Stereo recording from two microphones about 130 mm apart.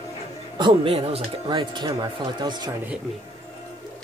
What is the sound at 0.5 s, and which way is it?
Speech, 40° right (ahead or behind).